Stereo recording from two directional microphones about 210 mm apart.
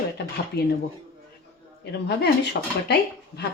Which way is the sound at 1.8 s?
55° left (ahead or behind).